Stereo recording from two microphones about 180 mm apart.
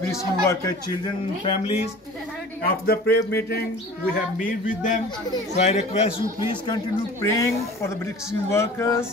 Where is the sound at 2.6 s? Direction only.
60° left (ahead or behind).